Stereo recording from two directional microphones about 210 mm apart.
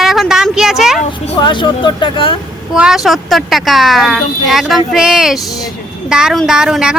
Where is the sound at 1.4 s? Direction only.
20° left (ahead or behind).